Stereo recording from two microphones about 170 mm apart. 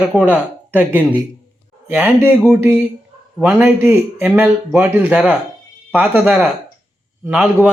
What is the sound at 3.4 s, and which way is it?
A man's voice, 10° right (ahead or behind).